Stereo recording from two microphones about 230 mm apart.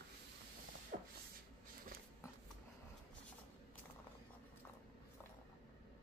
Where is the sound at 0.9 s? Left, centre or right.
Right.